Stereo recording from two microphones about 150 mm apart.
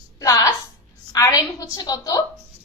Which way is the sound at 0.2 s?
25° left (ahead or behind).